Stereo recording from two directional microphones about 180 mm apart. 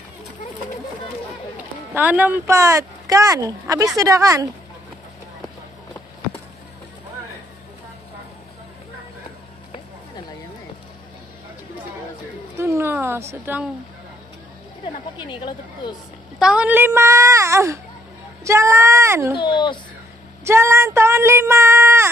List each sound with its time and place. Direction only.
2.0 s speech: 10° right (ahead or behind)
12.5 s a sound: 15° right (ahead or behind)
13.3 s speech: 10° right (ahead or behind)
15.1 s speech: 25° left (ahead or behind)
16.3 s speech: 5° right (ahead or behind)
19.3 s speech: 25° left (ahead or behind)
20.4 s speech: 15° right (ahead or behind)